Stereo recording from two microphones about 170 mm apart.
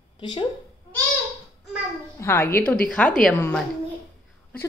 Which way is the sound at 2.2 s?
15° left (ahead or behind).